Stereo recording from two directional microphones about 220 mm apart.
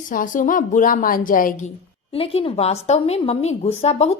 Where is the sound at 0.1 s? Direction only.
35° left (ahead or behind).